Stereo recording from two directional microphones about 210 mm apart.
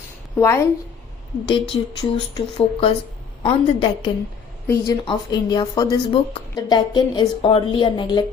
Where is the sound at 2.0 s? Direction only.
20° left (ahead or behind).